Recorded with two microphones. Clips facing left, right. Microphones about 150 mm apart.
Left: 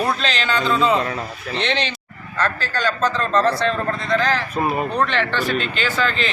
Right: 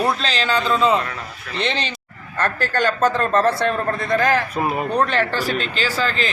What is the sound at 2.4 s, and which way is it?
A man's voice, 55° right (ahead or behind).